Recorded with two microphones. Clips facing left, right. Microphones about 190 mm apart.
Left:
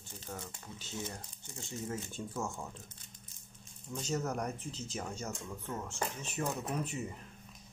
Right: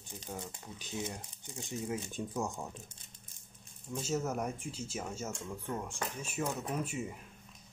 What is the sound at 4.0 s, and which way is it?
Speech, 5° right (ahead or behind).